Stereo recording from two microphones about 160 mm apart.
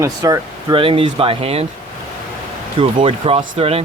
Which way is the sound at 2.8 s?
35° right (ahead or behind).